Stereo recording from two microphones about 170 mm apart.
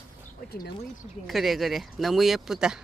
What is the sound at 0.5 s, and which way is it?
Speech, 65° left (ahead or behind).